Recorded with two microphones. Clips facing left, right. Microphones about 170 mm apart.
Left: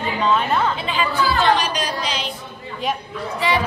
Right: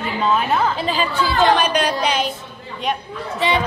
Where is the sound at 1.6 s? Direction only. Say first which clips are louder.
Right 5 dB; 60° right (ahead or behind).